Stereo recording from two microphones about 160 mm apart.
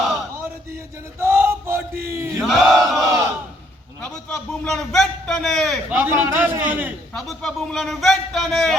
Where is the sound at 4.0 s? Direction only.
5° left (ahead or behind).